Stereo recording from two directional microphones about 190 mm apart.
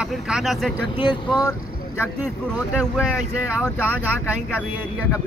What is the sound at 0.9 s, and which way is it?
Speech, 20° left (ahead or behind).